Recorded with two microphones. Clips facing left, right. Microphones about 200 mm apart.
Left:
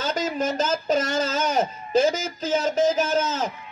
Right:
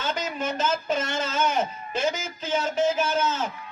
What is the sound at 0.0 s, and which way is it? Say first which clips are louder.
Speech: left 4 dB; 40° left (ahead or behind).